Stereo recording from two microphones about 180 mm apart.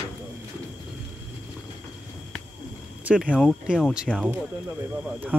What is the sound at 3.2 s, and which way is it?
Speech, centre (ahead or behind).